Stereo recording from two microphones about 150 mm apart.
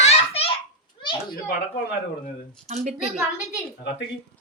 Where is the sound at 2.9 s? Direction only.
5° right (ahead or behind).